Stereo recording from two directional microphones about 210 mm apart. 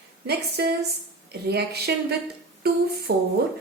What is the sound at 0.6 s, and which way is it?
A woman's voice, 50° right (ahead or behind).